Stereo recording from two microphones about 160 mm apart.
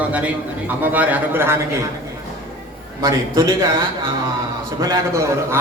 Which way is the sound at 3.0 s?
20° right (ahead or behind).